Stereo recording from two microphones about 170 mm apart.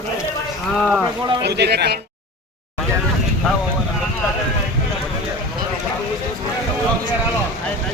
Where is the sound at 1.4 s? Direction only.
80° right.